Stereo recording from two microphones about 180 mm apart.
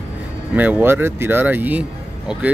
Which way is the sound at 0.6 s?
10° right (ahead or behind).